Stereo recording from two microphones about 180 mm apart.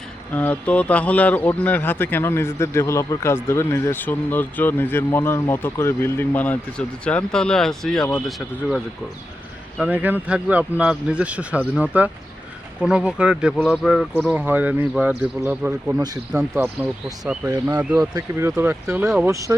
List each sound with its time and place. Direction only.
0.3 s speech: 10° left (ahead or behind)
9.7 s speech: 5° right (ahead or behind)
14.3 s speech: 10° right (ahead or behind)
17.7 s speech: 20° right (ahead or behind)